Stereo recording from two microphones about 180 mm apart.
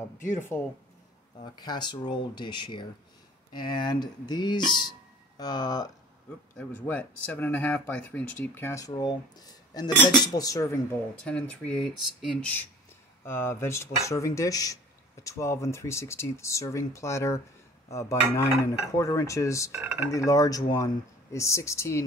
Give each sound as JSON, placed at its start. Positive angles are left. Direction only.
{"t": 0.5, "sound": "speech", "side_deg": 10}
{"t": 1.4, "sound": "speech", "side_deg": 25}
{"t": 6.5, "sound": "speech", "side_deg": 10}
{"t": 11.2, "sound": "speech", "side_deg": 5}
{"t": 19.7, "sound": "speech", "side_deg": -10}
{"t": 20.1, "sound": "speech", "side_deg": 15}